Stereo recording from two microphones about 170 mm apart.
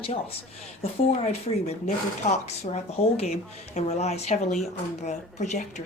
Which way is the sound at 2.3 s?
40° left (ahead or behind).